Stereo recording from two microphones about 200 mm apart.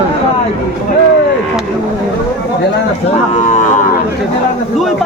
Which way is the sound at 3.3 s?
35° left (ahead or behind).